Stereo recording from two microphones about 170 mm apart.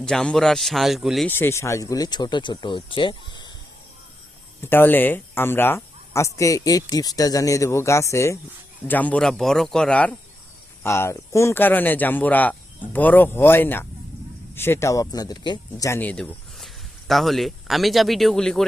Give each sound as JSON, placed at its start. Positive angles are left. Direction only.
{"t": 0.0, "sound": "speech", "side_deg": 5}
{"t": 1.3, "sound": "speech", "side_deg": 15}
{"t": 4.6, "sound": "speech", "side_deg": 10}